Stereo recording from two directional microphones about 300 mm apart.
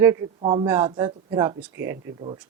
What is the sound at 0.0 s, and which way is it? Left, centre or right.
A woman's voice, centre.